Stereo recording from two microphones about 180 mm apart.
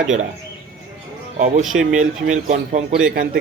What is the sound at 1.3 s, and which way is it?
Speech, 45° right (ahead or behind).